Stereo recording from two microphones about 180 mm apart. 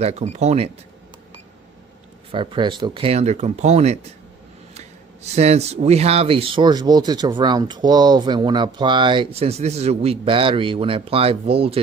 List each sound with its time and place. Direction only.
0.0 s speech: 40° right (ahead or behind)
2.3 s speech: 30° right (ahead or behind)